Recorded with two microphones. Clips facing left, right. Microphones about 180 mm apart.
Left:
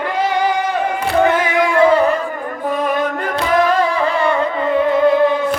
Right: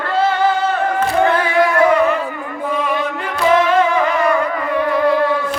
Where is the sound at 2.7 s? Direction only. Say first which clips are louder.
Left 2 dB; 45° left (ahead or behind); by 5.3 s 20° left (ahead or behind).